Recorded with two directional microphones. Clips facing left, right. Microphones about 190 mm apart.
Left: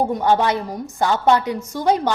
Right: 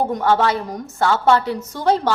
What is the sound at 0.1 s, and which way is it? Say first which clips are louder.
A woman's voice: even; 15° left (ahead or behind).